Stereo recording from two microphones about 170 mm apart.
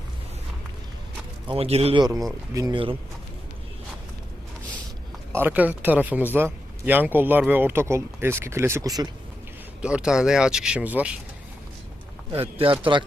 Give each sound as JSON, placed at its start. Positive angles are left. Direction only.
{"t": 1.5, "sound": "speech", "side_deg": -35}
{"t": 5.3, "sound": "a man's voice", "side_deg": -10}
{"t": 9.8, "sound": "speech", "side_deg": -5}
{"t": 12.3, "sound": "speech", "side_deg": -30}